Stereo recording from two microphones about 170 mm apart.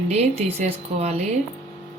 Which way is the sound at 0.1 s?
40° right (ahead or behind).